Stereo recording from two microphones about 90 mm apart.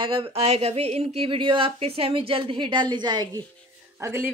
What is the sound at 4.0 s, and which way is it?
Speech, 25° right (ahead or behind).